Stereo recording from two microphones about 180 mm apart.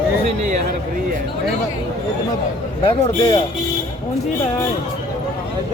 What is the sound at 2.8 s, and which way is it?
Speech, 30° left (ahead or behind).